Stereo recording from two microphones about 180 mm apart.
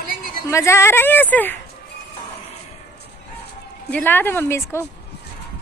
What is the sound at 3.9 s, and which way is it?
Speech, 10° left (ahead or behind).